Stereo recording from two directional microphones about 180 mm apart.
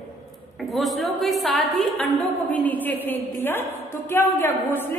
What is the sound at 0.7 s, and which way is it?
A woman's voice, centre (ahead or behind).